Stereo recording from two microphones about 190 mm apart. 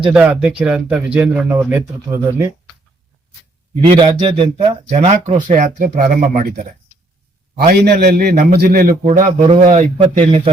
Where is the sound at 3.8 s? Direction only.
25° right (ahead or behind).